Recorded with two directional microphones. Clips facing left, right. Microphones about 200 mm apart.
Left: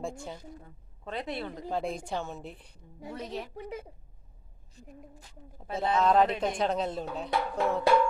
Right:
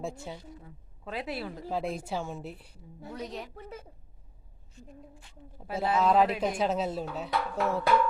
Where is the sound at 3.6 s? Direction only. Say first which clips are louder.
Left 5 dB; 15° left (ahead or behind).